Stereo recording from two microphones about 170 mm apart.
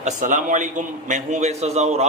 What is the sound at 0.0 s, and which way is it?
A man's voice, 50° right (ahead or behind).